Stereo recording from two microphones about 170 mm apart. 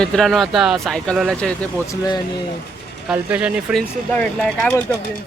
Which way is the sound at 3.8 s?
5° left (ahead or behind).